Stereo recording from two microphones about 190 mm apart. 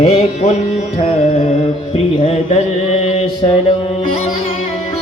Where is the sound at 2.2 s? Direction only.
30° left (ahead or behind).